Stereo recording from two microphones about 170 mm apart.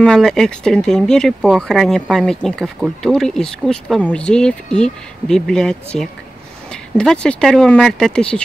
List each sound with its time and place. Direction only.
0.0 s speech: 5° left (ahead or behind)